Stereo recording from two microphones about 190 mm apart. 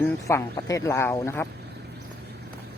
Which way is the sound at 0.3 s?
15° left (ahead or behind).